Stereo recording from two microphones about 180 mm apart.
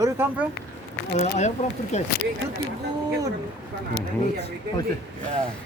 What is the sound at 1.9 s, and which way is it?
Speech, 40° left (ahead or behind).